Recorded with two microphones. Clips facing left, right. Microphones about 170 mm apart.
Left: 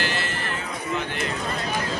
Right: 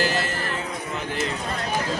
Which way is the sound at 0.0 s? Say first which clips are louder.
Right 4 dB; 40° right (ahead or behind).